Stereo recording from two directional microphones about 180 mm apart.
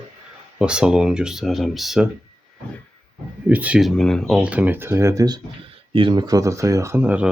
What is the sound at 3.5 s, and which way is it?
Speech, 10° right (ahead or behind).